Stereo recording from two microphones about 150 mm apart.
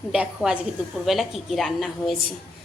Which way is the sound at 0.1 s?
5° right (ahead or behind).